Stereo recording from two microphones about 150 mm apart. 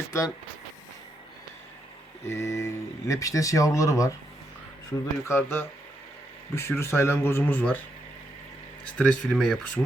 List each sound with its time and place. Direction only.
2.2 s speech: 20° left (ahead or behind)
9.0 s speech: 5° left (ahead or behind)